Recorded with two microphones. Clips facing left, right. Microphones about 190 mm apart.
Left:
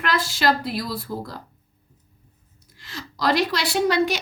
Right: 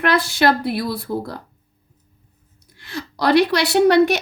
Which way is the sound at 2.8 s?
65° right (ahead or behind).